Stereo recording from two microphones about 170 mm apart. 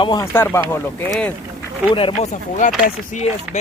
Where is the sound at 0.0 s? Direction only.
25° left (ahead or behind).